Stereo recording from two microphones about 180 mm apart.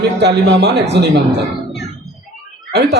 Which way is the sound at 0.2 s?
70° right (ahead or behind).